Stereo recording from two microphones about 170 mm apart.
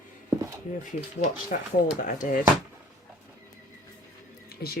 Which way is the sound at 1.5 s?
50° left (ahead or behind).